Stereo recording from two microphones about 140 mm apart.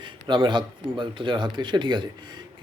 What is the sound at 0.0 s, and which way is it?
Speech, 35° right (ahead or behind).